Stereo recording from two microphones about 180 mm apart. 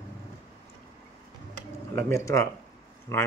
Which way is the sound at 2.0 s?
15° left (ahead or behind).